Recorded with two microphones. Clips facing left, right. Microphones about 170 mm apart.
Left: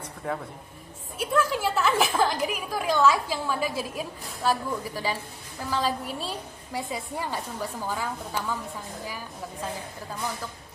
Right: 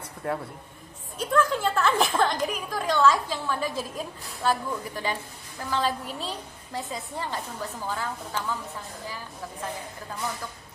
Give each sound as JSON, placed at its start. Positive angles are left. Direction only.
{"t": 0.2, "sound": "a woman's voice", "side_deg": 0}